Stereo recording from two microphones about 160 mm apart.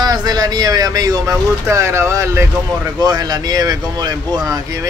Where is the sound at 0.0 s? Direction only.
25° right (ahead or behind).